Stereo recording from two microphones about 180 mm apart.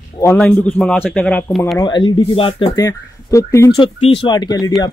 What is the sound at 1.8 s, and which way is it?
Speech, 25° left (ahead or behind).